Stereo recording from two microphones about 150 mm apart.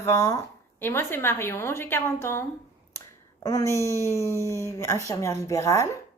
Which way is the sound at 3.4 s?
20° left (ahead or behind).